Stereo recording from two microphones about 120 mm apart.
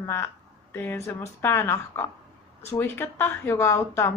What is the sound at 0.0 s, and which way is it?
A woman's voice, 20° left (ahead or behind).